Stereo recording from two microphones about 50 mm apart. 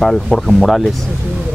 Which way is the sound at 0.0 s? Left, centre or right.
Centre.